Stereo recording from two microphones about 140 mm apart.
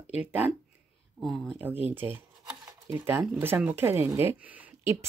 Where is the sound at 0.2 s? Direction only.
10° right (ahead or behind).